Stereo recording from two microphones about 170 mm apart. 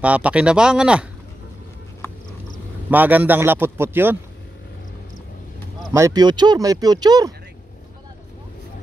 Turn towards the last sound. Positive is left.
turn(degrees=-25)  # may be behind; listen again after turning